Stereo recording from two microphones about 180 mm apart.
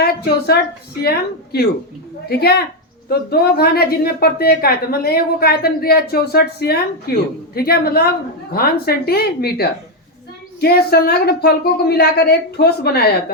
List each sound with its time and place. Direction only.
0.0 s a woman's voice: 60° left (ahead or behind)
2.3 s speech: 60° left (ahead or behind)